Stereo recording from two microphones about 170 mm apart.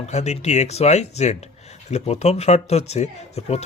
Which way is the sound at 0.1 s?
40° left (ahead or behind).